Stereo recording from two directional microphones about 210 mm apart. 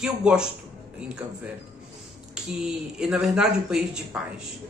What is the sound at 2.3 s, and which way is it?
A woman's voice, 5° right (ahead or behind).